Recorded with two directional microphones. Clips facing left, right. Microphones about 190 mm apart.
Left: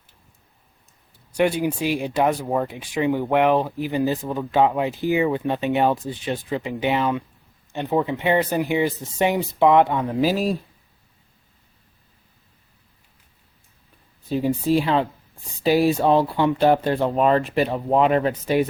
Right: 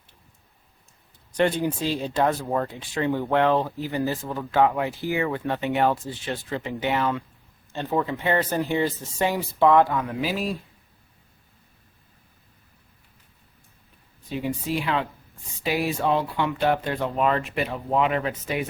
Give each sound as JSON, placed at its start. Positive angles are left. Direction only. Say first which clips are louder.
{"t": 1.4, "sound": "speech", "louder": "left 2 dB", "side_deg": 10}
{"t": 10.2, "sound": "speech", "louder": "left 6 dB", "side_deg": 40}
{"t": 14.3, "sound": "speech", "louder": "left 7 dB", "side_deg": 35}